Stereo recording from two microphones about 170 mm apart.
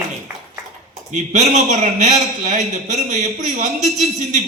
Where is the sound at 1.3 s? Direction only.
45° right (ahead or behind).